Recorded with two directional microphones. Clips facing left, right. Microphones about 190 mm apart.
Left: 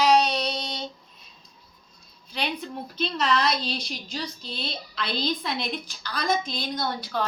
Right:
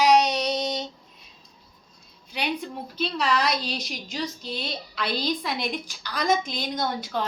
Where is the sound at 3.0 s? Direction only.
10° right (ahead or behind).